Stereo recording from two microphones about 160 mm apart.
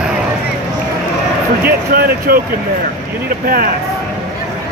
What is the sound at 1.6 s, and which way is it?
Speech, 70° right (ahead or behind).